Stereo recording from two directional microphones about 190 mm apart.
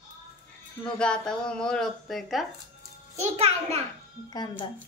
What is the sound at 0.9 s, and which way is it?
Speech, 5° left (ahead or behind).